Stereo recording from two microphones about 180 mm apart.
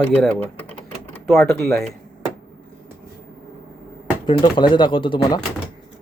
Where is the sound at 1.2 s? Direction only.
Centre (ahead or behind).